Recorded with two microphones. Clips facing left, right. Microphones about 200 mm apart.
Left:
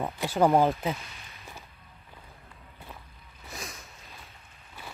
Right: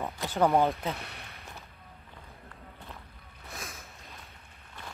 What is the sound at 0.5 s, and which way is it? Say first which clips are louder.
Speech: left 3 dB; centre (ahead or behind).